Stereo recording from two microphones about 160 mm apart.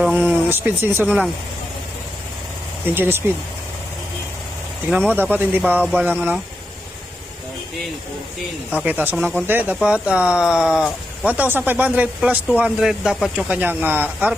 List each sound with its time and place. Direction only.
0.0 s speech: 5° right (ahead or behind)
1.0 s speech: centre (ahead or behind)
2.8 s speech: 15° right (ahead or behind)
4.9 s speech: 10° right (ahead or behind)
8.8 s speech: 10° right (ahead or behind)